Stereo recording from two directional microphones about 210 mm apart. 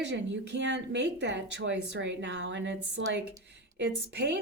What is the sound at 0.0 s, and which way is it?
Speech, 55° right (ahead or behind).